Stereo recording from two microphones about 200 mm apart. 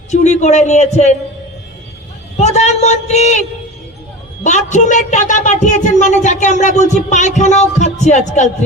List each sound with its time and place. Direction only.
0.1 s speech: 35° left (ahead or behind)
2.4 s speech: 35° left (ahead or behind)
4.4 s speech: 35° left (ahead or behind)